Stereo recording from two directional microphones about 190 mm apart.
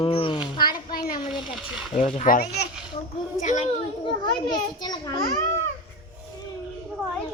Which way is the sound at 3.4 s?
40° left (ahead or behind).